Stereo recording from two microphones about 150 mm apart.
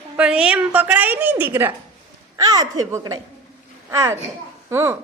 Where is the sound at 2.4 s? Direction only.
25° right (ahead or behind).